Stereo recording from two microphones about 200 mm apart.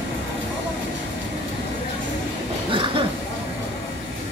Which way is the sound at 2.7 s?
25° right (ahead or behind).